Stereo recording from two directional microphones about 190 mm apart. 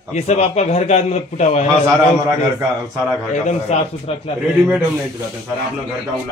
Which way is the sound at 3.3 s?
35° left (ahead or behind).